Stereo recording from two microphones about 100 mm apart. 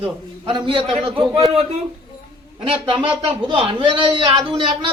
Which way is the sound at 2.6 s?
55° right (ahead or behind).